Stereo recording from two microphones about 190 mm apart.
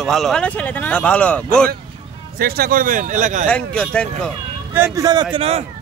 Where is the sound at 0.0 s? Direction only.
Centre (ahead or behind).